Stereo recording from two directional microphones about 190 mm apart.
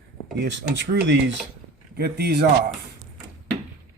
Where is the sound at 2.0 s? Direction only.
55° right (ahead or behind).